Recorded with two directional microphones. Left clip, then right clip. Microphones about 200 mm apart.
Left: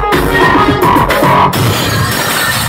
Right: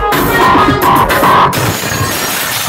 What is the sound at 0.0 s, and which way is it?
Music, 20° right (ahead or behind).